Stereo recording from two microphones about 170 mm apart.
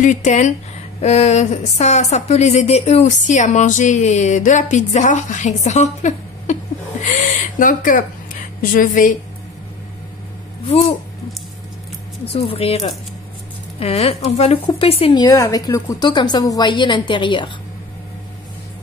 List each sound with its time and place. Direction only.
0.0 s speech: 45° left (ahead or behind)
12.3 s speech: 35° left (ahead or behind)
15.2 s a woman's voice: 20° left (ahead or behind)